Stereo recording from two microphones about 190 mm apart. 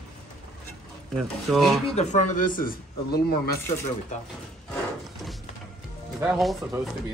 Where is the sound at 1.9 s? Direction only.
40° left (ahead or behind).